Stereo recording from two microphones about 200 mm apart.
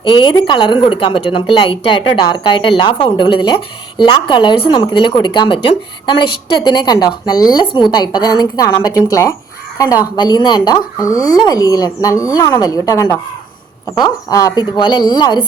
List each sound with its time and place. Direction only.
0.0 s speech: 25° left (ahead or behind)